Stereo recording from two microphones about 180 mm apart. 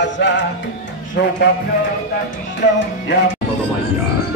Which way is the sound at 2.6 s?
80° left.